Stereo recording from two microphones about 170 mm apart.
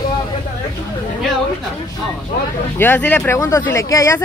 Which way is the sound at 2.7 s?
10° left (ahead or behind).